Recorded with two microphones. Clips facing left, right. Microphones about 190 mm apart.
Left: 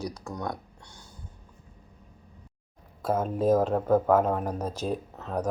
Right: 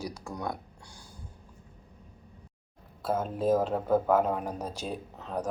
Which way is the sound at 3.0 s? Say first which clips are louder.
Left 3 dB; 5° right (ahead or behind).